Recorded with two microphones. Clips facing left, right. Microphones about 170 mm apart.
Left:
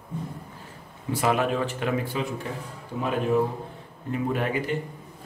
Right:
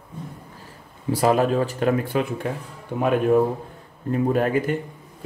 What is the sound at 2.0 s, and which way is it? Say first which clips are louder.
A man's voice: right 5 dB; 55° right (ahead or behind).